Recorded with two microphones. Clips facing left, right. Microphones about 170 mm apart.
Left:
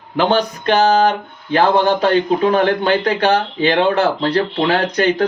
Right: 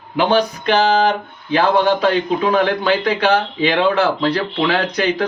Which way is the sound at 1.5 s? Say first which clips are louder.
Left 1 dB; 45° left (ahead or behind).